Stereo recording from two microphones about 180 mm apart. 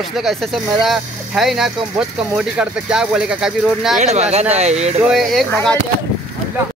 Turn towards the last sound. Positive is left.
turn(degrees=5)  # may be behind; listen again after turning